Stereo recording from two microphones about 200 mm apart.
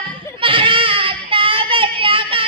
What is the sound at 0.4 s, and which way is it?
Child singing, 25° right (ahead or behind).